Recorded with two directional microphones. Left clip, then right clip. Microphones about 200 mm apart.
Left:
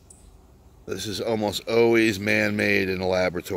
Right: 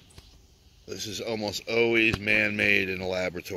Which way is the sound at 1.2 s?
5° left (ahead or behind).